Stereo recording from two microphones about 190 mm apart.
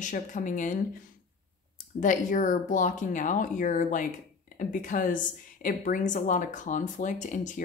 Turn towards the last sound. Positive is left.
turn(degrees=40)  # may be behind; listen again after turning